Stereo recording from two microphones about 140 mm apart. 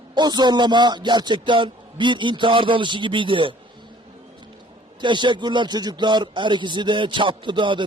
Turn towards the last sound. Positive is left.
turn(degrees=-35)  # may be behind; listen again after turning